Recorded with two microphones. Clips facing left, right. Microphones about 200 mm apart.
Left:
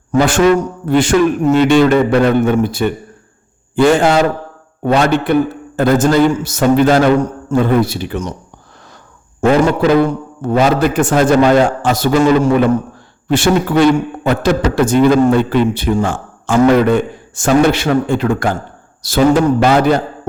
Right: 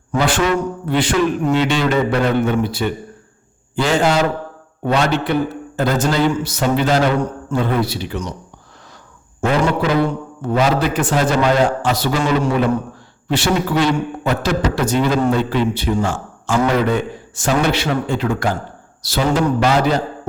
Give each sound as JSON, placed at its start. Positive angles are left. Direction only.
{"t": 0.1, "sound": "a man's voice", "side_deg": 45}
{"t": 10.1, "sound": "a man's voice", "side_deg": 50}